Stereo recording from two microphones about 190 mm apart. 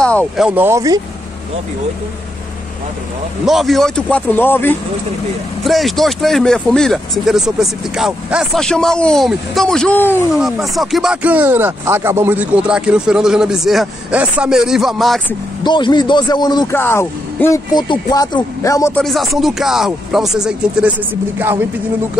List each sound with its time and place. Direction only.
0.0 s speech: 5° left (ahead or behind)
0.5 s speech: 10° right (ahead or behind)
3.4 s speech: centre (ahead or behind)
5.6 s speech: centre (ahead or behind)
10.3 s speech: centre (ahead or behind)
15.6 s a man's voice: 25° left (ahead or behind)
18.9 s speech: centre (ahead or behind)